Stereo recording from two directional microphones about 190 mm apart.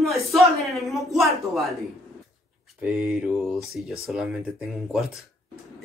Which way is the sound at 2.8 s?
5° right (ahead or behind).